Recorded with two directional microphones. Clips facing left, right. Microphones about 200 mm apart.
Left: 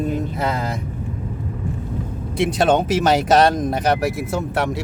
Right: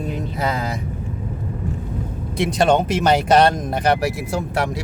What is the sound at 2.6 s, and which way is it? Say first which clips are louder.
Speech: right 1 dB; 5° left (ahead or behind).